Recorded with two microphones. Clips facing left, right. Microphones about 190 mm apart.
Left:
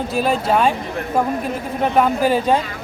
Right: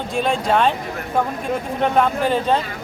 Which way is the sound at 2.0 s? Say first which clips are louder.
Left 4 dB; 10° left (ahead or behind).